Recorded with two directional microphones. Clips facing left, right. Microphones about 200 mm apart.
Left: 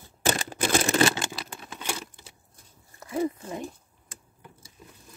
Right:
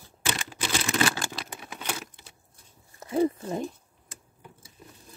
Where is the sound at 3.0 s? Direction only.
30° right (ahead or behind).